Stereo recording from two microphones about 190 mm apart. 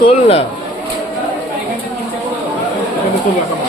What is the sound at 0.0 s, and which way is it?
Speech, 30° left (ahead or behind).